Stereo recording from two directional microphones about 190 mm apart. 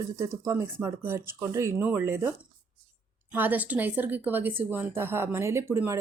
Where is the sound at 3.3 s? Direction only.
10° right (ahead or behind).